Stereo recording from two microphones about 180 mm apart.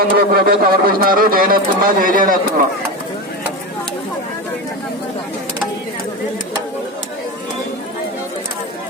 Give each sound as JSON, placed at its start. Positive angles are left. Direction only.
{"t": 0.0, "sound": "a man's voice", "side_deg": -60}